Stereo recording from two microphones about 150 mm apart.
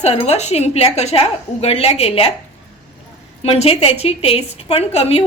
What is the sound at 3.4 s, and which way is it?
A woman's voice, 40° left (ahead or behind).